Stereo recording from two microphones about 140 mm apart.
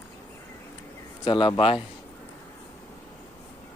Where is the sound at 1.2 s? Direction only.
35° left (ahead or behind).